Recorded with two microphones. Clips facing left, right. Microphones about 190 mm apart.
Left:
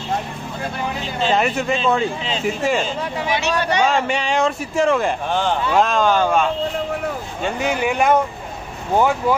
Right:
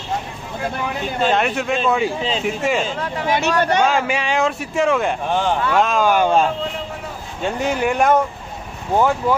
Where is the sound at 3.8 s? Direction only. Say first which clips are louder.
Even; 5° right (ahead or behind).